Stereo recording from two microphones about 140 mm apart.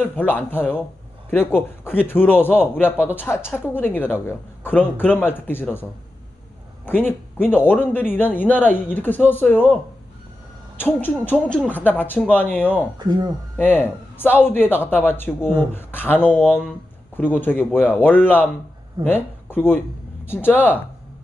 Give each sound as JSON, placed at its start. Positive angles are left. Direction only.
{"t": 0.0, "sound": "speech", "side_deg": 15}
{"t": 7.0, "sound": "speech", "side_deg": 15}
{"t": 10.8, "sound": "speech", "side_deg": 15}
{"t": 13.0, "sound": "speech", "side_deg": -30}
{"t": 13.6, "sound": "speech", "side_deg": 15}